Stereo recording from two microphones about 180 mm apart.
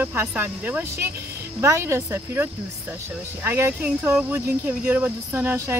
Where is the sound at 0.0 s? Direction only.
10° right (ahead or behind).